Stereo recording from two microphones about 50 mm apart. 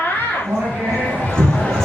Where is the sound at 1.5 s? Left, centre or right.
Centre.